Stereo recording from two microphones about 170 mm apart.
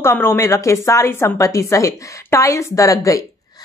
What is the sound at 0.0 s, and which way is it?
A woman's voice, 15° left (ahead or behind).